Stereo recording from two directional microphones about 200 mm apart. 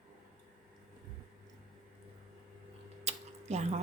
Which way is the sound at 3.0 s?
35° right (ahead or behind).